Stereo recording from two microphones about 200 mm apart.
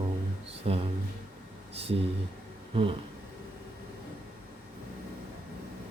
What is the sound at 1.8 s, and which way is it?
Speech, 30° right (ahead or behind).